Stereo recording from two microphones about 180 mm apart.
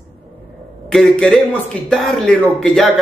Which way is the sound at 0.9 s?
5° left (ahead or behind).